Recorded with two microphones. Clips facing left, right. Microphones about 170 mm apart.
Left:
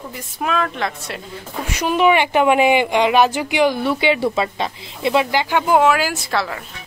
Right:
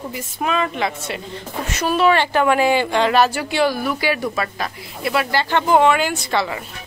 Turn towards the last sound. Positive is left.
turn(degrees=0)  # may be behind; listen again after turning